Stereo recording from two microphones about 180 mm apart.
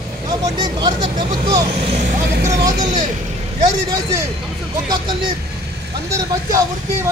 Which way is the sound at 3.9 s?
20° right (ahead or behind).